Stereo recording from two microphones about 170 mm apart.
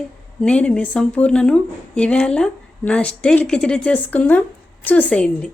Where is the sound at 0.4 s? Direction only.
5° left (ahead or behind).